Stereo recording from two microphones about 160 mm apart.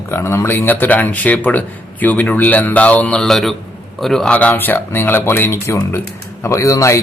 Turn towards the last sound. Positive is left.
turn(degrees=20)  # may be behind; listen again after turning